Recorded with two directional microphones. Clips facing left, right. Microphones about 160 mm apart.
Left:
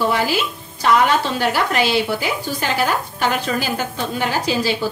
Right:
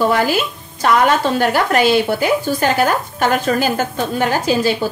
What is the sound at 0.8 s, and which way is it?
Speech, 50° right (ahead or behind).